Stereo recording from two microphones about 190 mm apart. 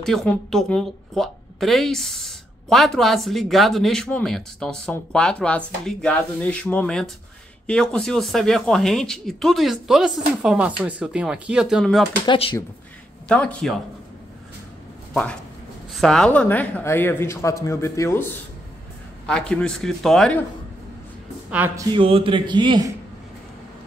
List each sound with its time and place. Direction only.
0.0 s a woman's voice: centre (ahead or behind)
12.3 s speech: 25° left (ahead or behind)
13.3 s a woman's voice: 5° left (ahead or behind)
15.9 s a woman's voice: centre (ahead or behind)
21.5 s speech: 10° right (ahead or behind)
21.9 s speech: 30° right (ahead or behind)